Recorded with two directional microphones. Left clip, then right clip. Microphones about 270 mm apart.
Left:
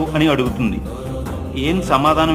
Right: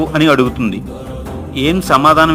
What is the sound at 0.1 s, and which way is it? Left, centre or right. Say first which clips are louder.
A man's voice: right 7 dB; right.